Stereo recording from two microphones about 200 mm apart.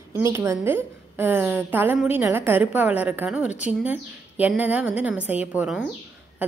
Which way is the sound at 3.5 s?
35° left (ahead or behind).